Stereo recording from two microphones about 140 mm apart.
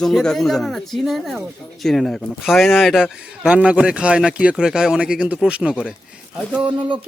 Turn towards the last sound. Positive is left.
turn(degrees=-10)  # may be behind; listen again after turning